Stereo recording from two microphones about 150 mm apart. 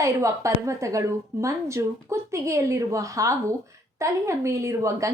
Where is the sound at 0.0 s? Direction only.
20° right (ahead or behind).